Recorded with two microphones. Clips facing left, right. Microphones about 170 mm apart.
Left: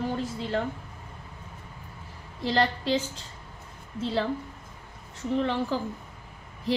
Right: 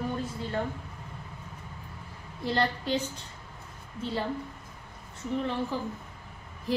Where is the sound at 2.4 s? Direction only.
90° left.